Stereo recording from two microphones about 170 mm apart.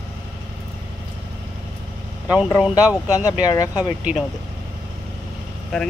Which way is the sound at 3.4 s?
20° left (ahead or behind).